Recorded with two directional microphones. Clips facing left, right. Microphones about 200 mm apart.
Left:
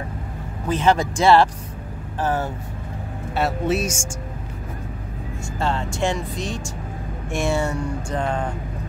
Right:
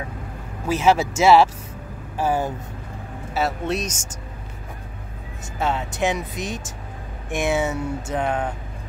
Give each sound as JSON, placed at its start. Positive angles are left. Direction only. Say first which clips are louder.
{"t": 0.7, "sound": "speech", "louder": "right 1 dB", "side_deg": -10}
{"t": 3.3, "sound": "music", "louder": "left 2 dB", "side_deg": 0}
{"t": 6.0, "sound": "speech", "louder": "right 1 dB", "side_deg": -10}
{"t": 7.3, "sound": "speech", "louder": "right 1 dB", "side_deg": -20}
{"t": 7.7, "sound": "music", "louder": "even", "side_deg": -5}